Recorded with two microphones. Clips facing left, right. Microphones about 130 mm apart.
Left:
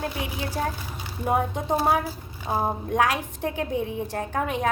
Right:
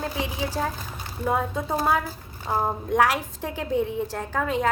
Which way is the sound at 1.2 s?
20° left (ahead or behind).